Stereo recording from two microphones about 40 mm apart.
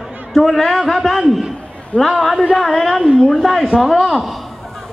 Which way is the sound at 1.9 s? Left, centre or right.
Left.